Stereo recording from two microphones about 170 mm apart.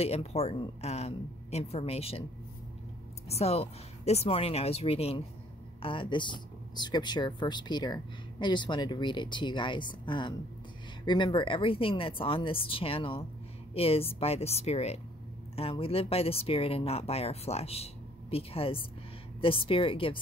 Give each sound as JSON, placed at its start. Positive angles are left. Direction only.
{"t": 0.0, "sound": "speech", "side_deg": 35}
{"t": 3.3, "sound": "speech", "side_deg": 35}